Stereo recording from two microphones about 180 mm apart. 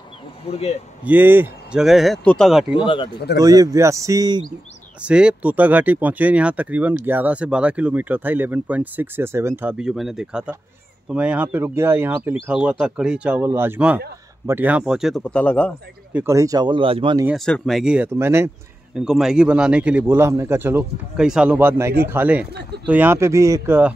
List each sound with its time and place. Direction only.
0.5 s a man's voice: 35° left (ahead or behind)
1.0 s speech: 10° right (ahead or behind)
2.7 s speech: 30° left (ahead or behind)
3.3 s speech: 20° right (ahead or behind)
5.0 s speech: 5° right (ahead or behind)
16.1 s speech: 10° right (ahead or behind)
17.3 s speech: centre (ahead or behind); by 18.5 s 15° right (ahead or behind)
18.9 s speech: 5° right (ahead or behind)